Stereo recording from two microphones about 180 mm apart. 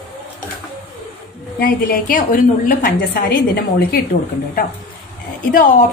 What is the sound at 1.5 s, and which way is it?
A woman's voice, 55° left (ahead or behind).